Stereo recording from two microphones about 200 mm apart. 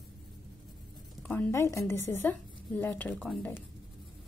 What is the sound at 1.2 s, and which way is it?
A woman's voice, 5° left (ahead or behind).